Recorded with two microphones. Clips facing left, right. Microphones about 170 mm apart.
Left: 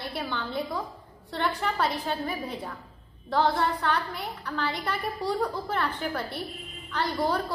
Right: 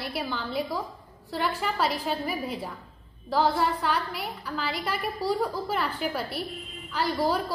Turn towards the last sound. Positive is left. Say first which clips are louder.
# right 1 dB
turn(degrees=-10)  # may be behind; listen again after turning